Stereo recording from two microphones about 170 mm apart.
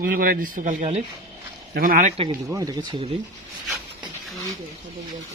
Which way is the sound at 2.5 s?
20° right (ahead or behind).